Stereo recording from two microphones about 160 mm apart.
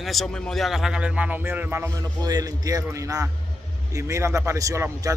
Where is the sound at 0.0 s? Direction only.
Centre (ahead or behind).